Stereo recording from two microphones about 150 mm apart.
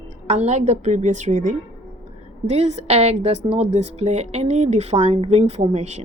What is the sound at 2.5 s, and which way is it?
A woman's voice, 45° right (ahead or behind).